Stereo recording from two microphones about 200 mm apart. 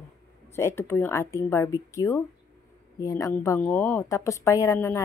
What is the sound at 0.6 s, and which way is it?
A woman's voice, 10° left (ahead or behind).